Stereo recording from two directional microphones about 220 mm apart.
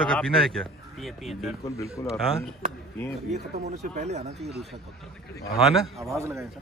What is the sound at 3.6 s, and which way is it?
Speech, 30° right (ahead or behind).